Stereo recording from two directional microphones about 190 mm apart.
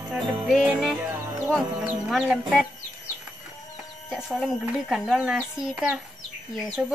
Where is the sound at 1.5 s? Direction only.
Centre (ahead or behind).